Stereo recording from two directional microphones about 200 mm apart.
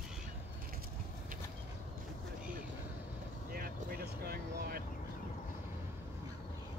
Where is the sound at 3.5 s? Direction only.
45° right (ahead or behind).